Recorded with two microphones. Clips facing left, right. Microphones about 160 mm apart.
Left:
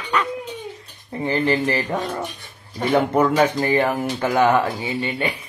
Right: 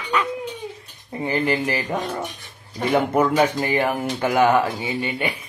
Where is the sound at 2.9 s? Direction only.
10° right (ahead or behind).